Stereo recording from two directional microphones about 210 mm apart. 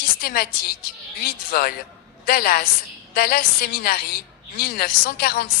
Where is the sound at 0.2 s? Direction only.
45° left (ahead or behind).